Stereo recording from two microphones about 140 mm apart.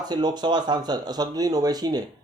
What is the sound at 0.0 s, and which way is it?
Speech, 30° right (ahead or behind).